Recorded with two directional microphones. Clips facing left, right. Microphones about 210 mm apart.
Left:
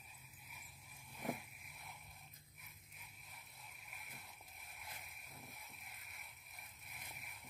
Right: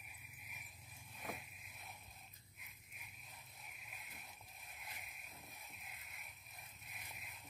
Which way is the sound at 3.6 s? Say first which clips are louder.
Even; 15° right (ahead or behind).